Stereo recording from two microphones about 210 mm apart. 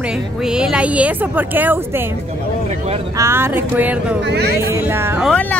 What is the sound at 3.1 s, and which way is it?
A woman's voice, 10° right (ahead or behind).